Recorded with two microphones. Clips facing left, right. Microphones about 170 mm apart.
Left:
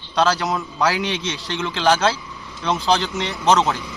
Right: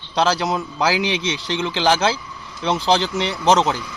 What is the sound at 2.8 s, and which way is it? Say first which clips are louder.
Speech: right 1 dB; 20° right (ahead or behind).